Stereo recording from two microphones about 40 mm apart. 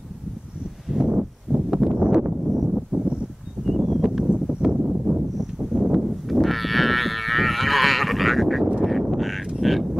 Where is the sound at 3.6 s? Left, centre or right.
Centre.